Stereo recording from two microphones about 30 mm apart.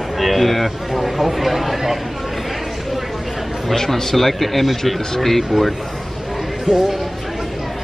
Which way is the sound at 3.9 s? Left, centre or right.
Centre.